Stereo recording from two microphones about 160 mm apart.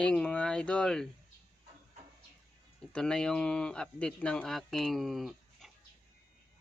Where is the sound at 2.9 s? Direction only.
5° left (ahead or behind).